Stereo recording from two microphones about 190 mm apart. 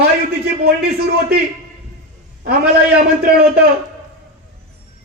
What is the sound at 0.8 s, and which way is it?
Speech, 55° right (ahead or behind).